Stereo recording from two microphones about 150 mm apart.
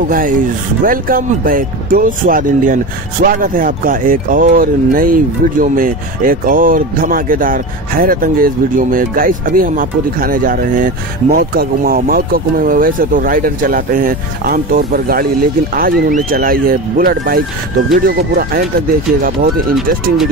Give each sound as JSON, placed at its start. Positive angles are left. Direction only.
{"t": 0.1, "sound": "speech", "side_deg": -65}
{"t": 15.7, "sound": "speech", "side_deg": -65}